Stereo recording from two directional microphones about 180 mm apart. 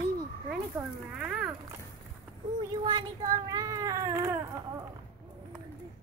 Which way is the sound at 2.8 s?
25° right (ahead or behind).